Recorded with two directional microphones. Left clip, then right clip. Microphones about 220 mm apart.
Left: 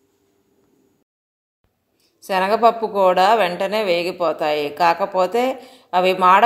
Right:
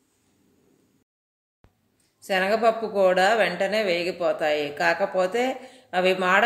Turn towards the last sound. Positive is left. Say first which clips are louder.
# left 7 dB
turn(degrees=25)  # may be behind; listen again after turning